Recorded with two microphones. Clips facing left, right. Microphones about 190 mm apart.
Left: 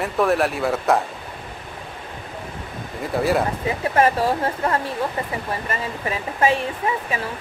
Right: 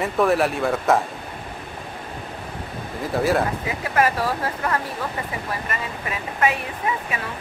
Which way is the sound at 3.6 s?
30° left (ahead or behind).